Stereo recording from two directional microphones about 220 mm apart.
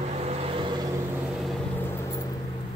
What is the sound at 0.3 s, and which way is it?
Vehicle, 25° right (ahead or behind).